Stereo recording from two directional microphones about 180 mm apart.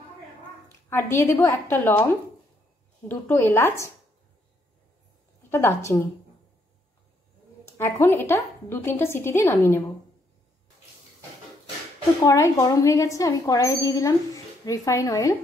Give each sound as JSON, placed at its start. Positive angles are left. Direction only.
{"t": 0.7, "sound": "a woman's voice", "side_deg": 15}
{"t": 3.1, "sound": "a woman's voice", "side_deg": 10}
{"t": 5.5, "sound": "a woman's voice", "side_deg": 15}
{"t": 7.7, "sound": "a woman's voice", "side_deg": 15}
{"t": 12.3, "sound": "a woman's voice", "side_deg": 15}